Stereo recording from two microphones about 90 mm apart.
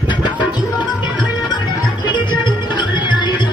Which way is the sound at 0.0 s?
55° left (ahead or behind).